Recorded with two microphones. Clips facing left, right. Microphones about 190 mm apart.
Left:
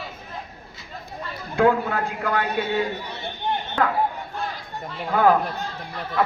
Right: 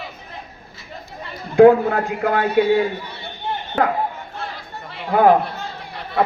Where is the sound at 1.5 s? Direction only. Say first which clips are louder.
Right 9 dB; 20° right (ahead or behind).